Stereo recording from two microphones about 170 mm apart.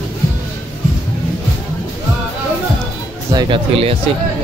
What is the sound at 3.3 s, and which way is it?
Speech, 35° right (ahead or behind).